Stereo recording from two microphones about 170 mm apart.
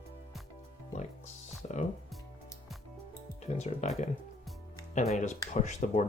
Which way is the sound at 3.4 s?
40° left (ahead or behind).